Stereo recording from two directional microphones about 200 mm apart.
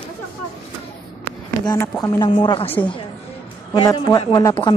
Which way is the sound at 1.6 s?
20° left (ahead or behind).